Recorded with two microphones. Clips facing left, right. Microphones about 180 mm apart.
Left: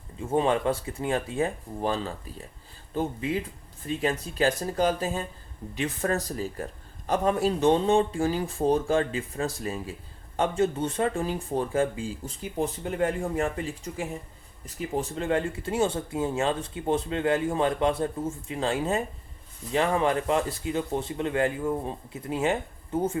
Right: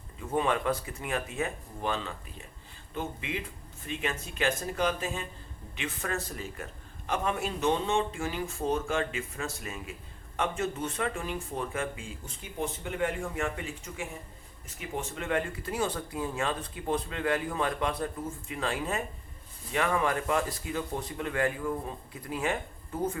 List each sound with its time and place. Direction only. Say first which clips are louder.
0.2 s speech: left 4 dB; 30° left (ahead or behind)